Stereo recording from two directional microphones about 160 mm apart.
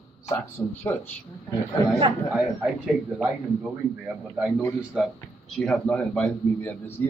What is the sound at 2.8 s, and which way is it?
A man's voice, 5° right (ahead or behind).